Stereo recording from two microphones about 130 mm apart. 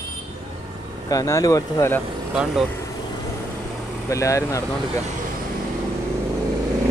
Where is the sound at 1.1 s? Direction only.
25° left (ahead or behind).